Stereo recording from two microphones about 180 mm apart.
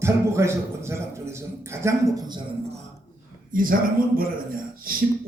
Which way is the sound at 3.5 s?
50° right (ahead or behind).